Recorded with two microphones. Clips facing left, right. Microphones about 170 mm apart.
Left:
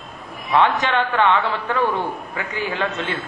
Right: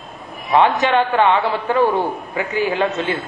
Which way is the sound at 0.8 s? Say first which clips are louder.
Right 3 dB; 30° right (ahead or behind).